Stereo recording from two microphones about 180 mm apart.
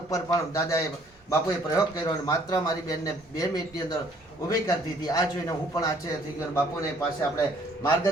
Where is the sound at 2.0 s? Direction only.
20° left (ahead or behind).